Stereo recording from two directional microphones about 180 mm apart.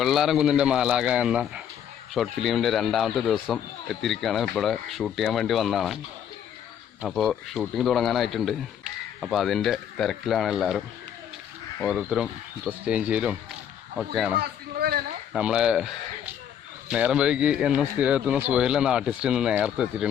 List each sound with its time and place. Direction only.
0.0 s speech: centre (ahead or behind)
7.0 s speech: centre (ahead or behind)
14.3 s a sound: 60° right (ahead or behind)
15.3 s speech: 5° right (ahead or behind)